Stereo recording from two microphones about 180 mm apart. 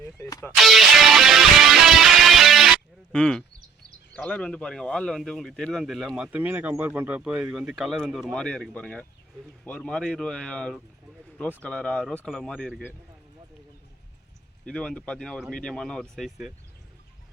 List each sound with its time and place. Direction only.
0.2 s speech: 15° left (ahead or behind)
0.6 s music: centre (ahead or behind)
4.1 s speech: 5° left (ahead or behind)
14.6 s speech: 5° left (ahead or behind)